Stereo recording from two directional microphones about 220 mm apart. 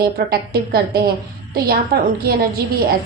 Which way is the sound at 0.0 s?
45° right (ahead or behind).